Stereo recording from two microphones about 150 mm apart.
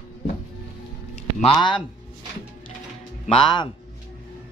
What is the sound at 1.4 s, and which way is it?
Speech, 30° left (ahead or behind).